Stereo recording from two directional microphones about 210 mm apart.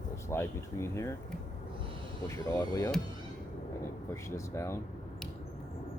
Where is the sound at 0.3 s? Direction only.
10° left (ahead or behind).